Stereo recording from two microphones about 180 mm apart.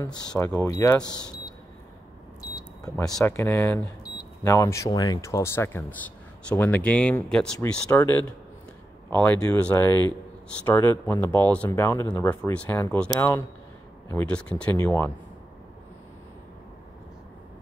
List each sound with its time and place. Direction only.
0.4 s speech: 15° left (ahead or behind)
2.5 s a sound: 20° left (ahead or behind)
3.3 s speech: 10° left (ahead or behind)